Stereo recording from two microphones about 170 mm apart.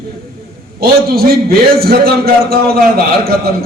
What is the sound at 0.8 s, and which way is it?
A man's voice, 65° right (ahead or behind).